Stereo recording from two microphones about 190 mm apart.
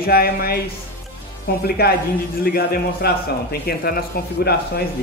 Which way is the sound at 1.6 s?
55° left (ahead or behind).